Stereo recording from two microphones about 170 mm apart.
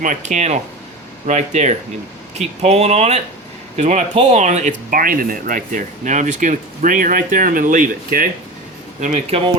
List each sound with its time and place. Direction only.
0.0 s speech: 45° right (ahead or behind)